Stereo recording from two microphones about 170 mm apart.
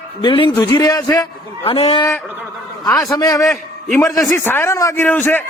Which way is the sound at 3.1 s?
20° left (ahead or behind).